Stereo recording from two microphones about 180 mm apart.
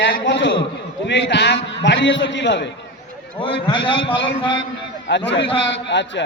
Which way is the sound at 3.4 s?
30° left (ahead or behind).